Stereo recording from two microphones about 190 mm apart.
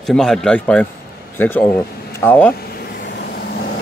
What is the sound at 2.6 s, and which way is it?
Vehicle, 55° left (ahead or behind).